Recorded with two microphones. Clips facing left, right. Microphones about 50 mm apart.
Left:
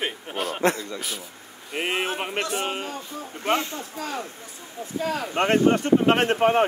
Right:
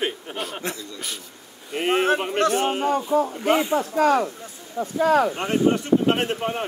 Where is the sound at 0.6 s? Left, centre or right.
Left.